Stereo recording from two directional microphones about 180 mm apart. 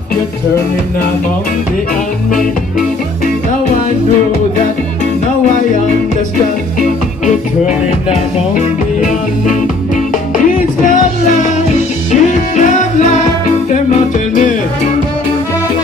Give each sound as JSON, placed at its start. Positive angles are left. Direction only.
{"t": 6.8, "sound": "music", "side_deg": 45}
{"t": 12.1, "sound": "music", "side_deg": 45}